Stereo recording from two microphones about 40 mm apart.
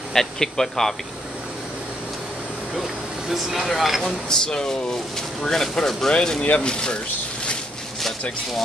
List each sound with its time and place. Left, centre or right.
0.1 s speech: centre
2.7 s speech: centre
4.0 s speech: centre